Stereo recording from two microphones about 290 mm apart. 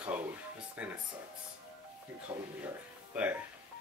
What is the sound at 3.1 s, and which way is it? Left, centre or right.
Speech, centre.